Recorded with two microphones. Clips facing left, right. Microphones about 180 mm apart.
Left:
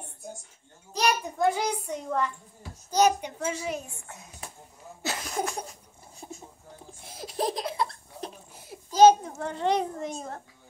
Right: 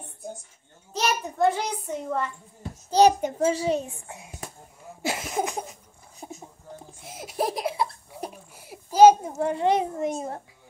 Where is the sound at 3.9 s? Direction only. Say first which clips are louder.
Right 4 dB; 15° right (ahead or behind).